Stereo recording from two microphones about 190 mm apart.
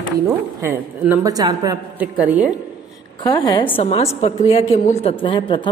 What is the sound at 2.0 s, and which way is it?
Speech, 10° right (ahead or behind).